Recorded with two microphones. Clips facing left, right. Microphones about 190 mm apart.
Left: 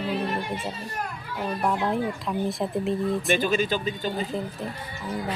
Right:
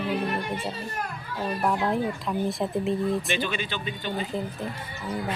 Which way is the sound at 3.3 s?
45° left (ahead or behind).